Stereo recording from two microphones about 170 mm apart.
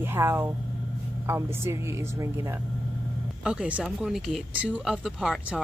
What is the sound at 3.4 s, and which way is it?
Speech, 5° right (ahead or behind).